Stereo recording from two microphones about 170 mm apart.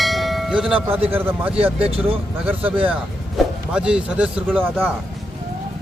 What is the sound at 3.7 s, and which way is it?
Speech, 5° right (ahead or behind).